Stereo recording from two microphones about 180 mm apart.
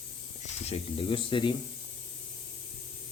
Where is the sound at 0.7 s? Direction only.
30° left (ahead or behind).